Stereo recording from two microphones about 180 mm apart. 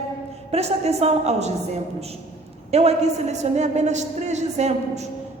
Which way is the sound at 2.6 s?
35° right (ahead or behind).